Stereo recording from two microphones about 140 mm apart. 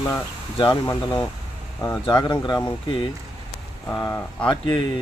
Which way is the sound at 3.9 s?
15° left (ahead or behind).